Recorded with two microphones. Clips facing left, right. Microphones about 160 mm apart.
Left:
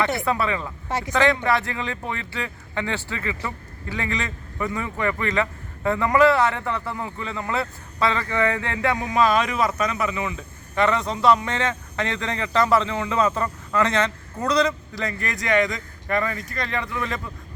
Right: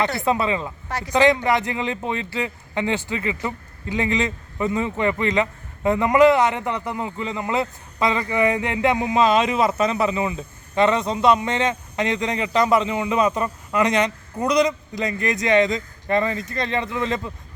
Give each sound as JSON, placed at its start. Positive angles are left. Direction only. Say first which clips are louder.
{"t": 0.3, "sound": "a man's voice", "louder": "right 3 dB", "side_deg": -20}
{"t": 0.9, "sound": "speech", "louder": "left 5 dB", "side_deg": 25}
{"t": 1.1, "sound": "a man's voice", "louder": "right 3 dB", "side_deg": -20}